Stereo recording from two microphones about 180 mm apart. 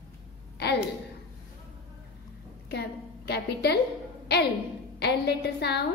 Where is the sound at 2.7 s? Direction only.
65° left (ahead or behind).